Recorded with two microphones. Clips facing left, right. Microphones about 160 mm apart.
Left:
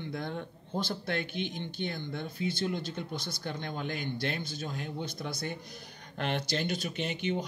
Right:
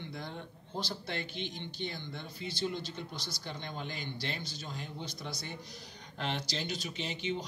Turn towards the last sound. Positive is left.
turn(degrees=55)  # may be behind; listen again after turning